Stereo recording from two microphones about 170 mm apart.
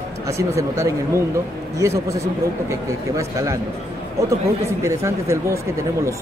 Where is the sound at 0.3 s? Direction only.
15° right (ahead or behind).